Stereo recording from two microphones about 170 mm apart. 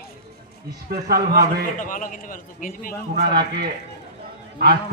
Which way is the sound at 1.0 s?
65° right (ahead or behind).